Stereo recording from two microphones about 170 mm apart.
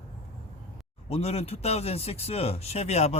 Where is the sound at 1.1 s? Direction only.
35° left (ahead or behind).